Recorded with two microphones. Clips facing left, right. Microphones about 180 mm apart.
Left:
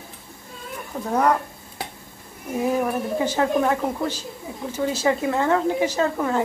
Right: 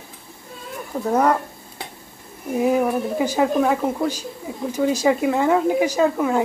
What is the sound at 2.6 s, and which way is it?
Speech, 10° right (ahead or behind).